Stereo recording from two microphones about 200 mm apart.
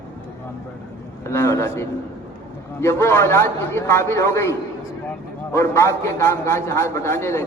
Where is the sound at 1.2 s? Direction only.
15° left (ahead or behind).